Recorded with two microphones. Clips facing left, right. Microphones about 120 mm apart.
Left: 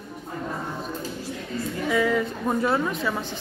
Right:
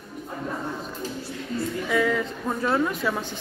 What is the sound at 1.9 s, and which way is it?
A woman's voice, centre (ahead or behind).